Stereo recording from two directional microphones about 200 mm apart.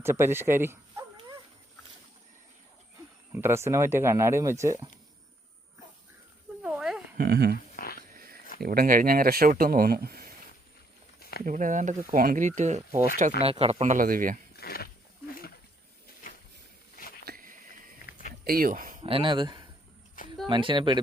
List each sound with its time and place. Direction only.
0.0 s speech: 10° right (ahead or behind)
3.3 s speech: 10° right (ahead or behind)
6.6 s a sound: 5° right (ahead or behind)
7.2 s speech: 55° right (ahead or behind)
7.9 s a sound: 45° right (ahead or behind)
8.5 s speech: 50° right (ahead or behind)
11.2 s snake: 50° left (ahead or behind)
11.4 s speech: 40° right (ahead or behind)
14.5 s wild animals: 50° left (ahead or behind)
17.2 s a sound: 45° right (ahead or behind)
18.0 s a sound: 40° left (ahead or behind)
18.4 s speech: 45° right (ahead or behind)
19.0 s speech: 25° right (ahead or behind)